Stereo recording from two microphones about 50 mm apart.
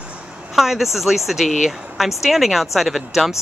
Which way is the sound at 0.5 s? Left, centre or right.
Centre.